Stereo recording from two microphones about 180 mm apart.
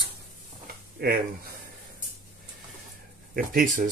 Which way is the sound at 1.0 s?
60° right (ahead or behind).